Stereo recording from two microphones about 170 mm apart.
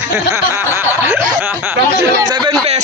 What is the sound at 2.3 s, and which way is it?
Speech, 25° right (ahead or behind).